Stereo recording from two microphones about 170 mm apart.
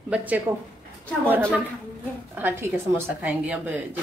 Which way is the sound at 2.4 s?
10° right (ahead or behind).